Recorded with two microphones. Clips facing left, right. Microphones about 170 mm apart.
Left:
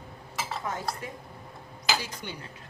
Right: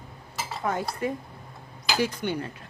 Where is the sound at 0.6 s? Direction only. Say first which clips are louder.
Right 11 dB; 65° right (ahead or behind).